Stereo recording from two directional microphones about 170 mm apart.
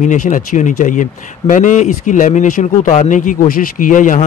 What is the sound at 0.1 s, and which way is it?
Speech, 50° left (ahead or behind).